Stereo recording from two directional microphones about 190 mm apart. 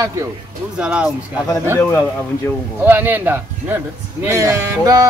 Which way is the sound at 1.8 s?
10° left (ahead or behind).